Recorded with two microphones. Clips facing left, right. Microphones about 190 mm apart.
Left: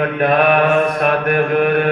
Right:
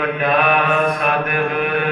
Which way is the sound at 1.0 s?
45° left (ahead or behind).